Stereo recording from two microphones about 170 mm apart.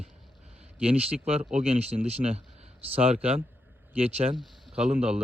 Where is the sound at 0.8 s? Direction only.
35° right (ahead or behind).